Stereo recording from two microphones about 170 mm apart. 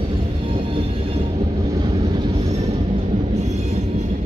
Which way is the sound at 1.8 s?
25° right (ahead or behind).